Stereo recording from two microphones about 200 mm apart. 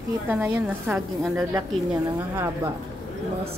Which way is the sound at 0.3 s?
10° right (ahead or behind).